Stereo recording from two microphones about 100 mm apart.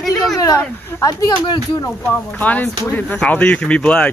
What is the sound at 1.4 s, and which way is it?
Speech, 55° left (ahead or behind).